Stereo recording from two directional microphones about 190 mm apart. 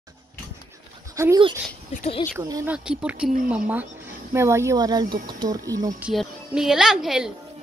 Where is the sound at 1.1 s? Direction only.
15° right (ahead or behind).